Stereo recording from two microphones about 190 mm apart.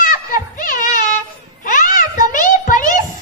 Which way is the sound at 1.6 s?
45° left (ahead or behind).